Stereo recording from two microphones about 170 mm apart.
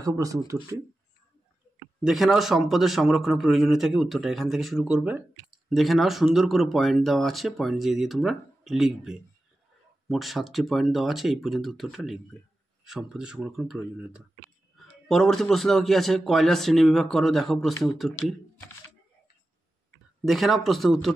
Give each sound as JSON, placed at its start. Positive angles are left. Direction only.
{"t": 0.0, "sound": "speech", "side_deg": -20}
{"t": 2.0, "sound": "speech", "side_deg": 0}
{"t": 20.2, "sound": "speech", "side_deg": 0}